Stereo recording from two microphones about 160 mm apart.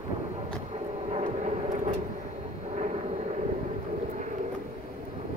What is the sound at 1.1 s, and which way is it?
Vehicle, 45° right (ahead or behind).